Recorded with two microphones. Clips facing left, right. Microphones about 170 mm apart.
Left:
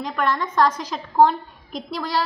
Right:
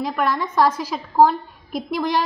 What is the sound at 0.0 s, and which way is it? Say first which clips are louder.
A woman's voice: right 2 dB; 5° right (ahead or behind).